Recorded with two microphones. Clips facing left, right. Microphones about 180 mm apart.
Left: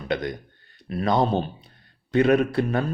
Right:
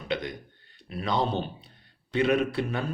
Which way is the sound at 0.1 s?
45° left (ahead or behind).